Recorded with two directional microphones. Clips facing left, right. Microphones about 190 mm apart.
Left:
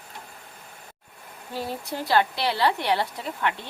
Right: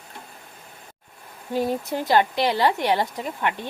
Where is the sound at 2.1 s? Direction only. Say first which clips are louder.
Right 3 dB; 15° right (ahead or behind).